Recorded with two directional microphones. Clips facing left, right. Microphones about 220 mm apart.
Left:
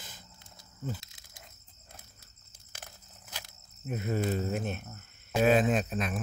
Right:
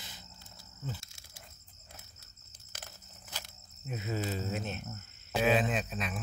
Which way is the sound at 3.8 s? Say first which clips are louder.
Left 5 dB; 55° left (ahead or behind).